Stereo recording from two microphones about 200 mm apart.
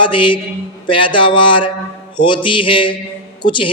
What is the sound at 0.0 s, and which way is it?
A man's voice, 25° left (ahead or behind).